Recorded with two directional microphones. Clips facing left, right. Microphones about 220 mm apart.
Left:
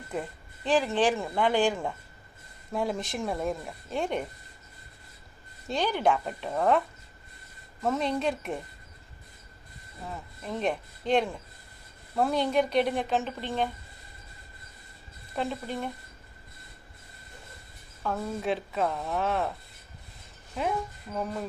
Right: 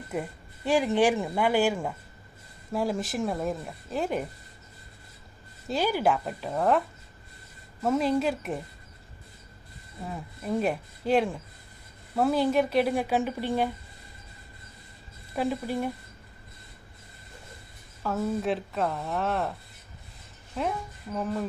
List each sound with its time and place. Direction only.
0.1 s speech: 10° right (ahead or behind)
5.6 s speech: 5° right (ahead or behind)
10.1 s speech: 5° right (ahead or behind)
15.4 s speech: 10° right (ahead or behind)
18.0 s speech: 5° right (ahead or behind)
20.6 s speech: centre (ahead or behind)